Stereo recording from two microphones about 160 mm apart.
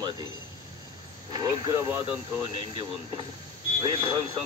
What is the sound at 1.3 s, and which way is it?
Speech, 25° right (ahead or behind).